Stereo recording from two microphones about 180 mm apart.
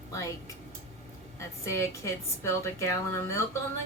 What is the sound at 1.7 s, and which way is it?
A woman's voice, 15° left (ahead or behind).